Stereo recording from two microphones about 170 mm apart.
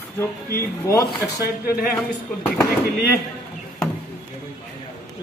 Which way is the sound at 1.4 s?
60° left (ahead or behind).